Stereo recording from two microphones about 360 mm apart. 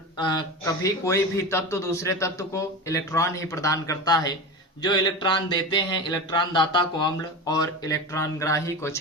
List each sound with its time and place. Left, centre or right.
0.3 s speech: centre